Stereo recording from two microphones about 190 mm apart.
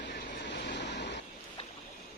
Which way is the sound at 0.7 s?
65° left (ahead or behind).